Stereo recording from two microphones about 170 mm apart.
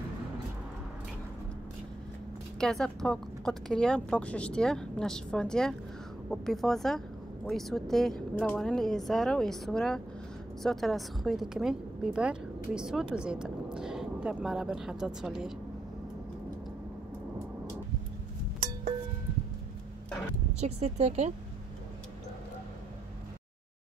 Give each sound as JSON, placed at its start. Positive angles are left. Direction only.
{"t": 2.6, "sound": "a woman's voice", "side_deg": 5}
{"t": 20.6, "sound": "speech", "side_deg": -40}